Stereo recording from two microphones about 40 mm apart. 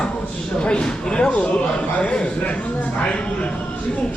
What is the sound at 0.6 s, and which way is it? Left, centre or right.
Speech, left.